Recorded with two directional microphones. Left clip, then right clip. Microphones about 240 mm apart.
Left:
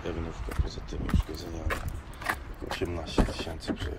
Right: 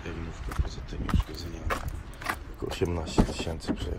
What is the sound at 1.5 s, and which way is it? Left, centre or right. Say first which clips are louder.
Horse: right 3 dB; centre.